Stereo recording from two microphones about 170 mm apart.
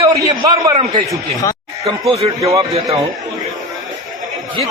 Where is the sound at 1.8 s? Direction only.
35° right (ahead or behind).